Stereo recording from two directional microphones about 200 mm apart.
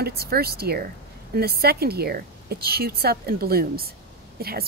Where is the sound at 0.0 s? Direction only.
50° right (ahead or behind).